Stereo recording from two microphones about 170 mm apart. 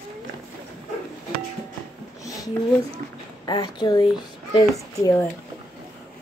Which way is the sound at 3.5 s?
25° left (ahead or behind).